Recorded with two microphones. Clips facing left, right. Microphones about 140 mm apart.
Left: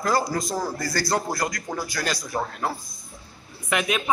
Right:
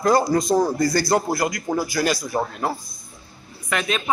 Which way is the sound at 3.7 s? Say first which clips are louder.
Even; 15° left (ahead or behind).